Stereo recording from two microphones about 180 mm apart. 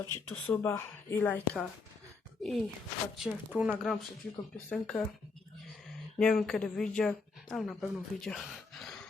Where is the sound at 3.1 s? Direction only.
5° right (ahead or behind).